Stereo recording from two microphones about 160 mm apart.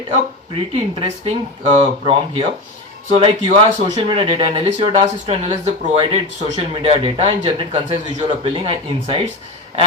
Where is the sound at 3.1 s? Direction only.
35° right (ahead or behind).